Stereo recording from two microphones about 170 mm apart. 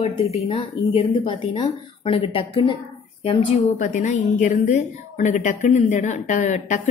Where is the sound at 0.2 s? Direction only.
35° left (ahead or behind).